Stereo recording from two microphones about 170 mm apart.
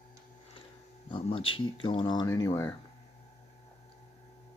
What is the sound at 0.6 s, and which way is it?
Speech, 30° left (ahead or behind).